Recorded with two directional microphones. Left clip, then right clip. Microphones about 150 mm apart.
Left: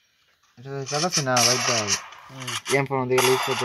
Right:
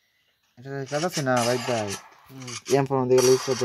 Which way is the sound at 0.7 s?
30° right (ahead or behind).